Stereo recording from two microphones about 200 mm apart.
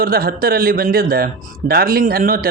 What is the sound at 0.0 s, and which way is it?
A man's voice, 50° right (ahead or behind).